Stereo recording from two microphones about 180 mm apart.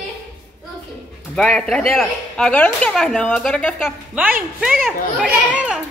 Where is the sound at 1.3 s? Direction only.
5° left (ahead or behind).